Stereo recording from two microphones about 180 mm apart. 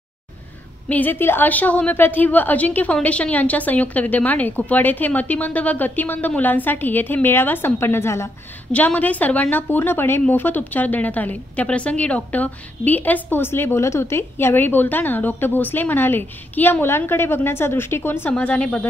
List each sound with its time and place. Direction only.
0.8 s a woman's voice: 10° left (ahead or behind)